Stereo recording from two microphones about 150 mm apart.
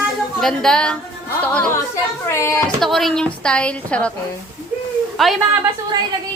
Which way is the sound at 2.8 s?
Centre (ahead or behind).